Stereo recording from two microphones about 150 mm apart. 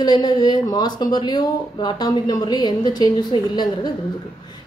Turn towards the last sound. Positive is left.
turn(degrees=30)  # may be behind; listen again after turning